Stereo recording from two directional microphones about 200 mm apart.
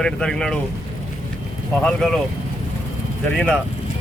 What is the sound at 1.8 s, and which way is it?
Speech, 5° left (ahead or behind).